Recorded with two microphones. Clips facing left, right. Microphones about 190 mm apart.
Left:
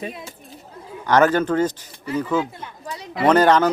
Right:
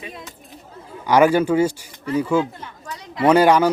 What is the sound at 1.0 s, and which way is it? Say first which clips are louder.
A man's voice: right 2 dB; 10° right (ahead or behind).